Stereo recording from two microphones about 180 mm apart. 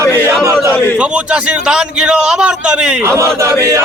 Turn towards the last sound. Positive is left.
turn(degrees=-15)  # may be behind; listen again after turning